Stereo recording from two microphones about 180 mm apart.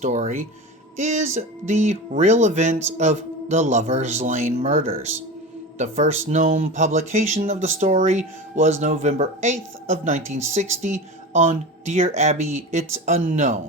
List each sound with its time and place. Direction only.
0.0 s speech: 40° right (ahead or behind)